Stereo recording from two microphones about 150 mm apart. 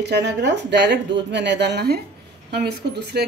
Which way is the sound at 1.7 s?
90° right.